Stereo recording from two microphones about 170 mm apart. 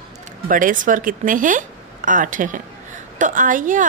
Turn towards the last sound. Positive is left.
turn(degrees=-50)  # may be behind; listen again after turning